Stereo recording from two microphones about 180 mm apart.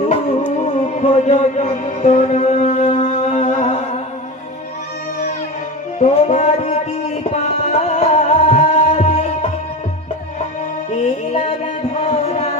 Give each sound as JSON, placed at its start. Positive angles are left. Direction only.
{"t": 0.1, "sound": "music", "side_deg": 40}
{"t": 6.0, "sound": "music", "side_deg": 40}
{"t": 11.9, "sound": "music", "side_deg": 40}